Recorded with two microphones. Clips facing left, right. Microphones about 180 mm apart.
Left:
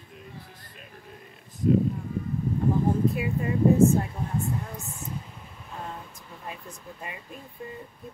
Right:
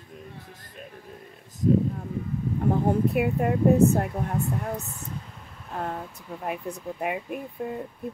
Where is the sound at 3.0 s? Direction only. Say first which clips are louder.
Right 3 dB; 60° right (ahead or behind).